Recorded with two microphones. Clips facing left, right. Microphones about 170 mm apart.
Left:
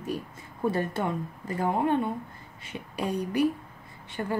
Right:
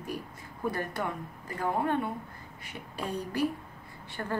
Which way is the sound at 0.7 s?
25° left (ahead or behind).